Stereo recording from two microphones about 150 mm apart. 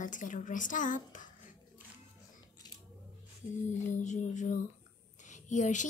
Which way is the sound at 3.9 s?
55° left (ahead or behind).